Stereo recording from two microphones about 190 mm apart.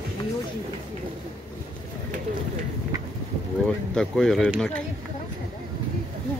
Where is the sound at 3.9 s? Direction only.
Centre (ahead or behind).